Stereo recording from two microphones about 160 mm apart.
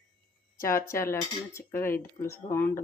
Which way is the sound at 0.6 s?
15° left (ahead or behind).